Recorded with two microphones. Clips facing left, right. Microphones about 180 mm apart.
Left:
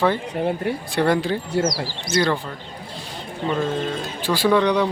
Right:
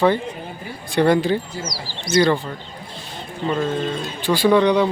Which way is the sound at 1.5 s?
55° left (ahead or behind).